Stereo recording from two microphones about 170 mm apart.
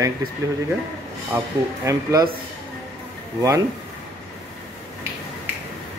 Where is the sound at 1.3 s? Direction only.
15° right (ahead or behind).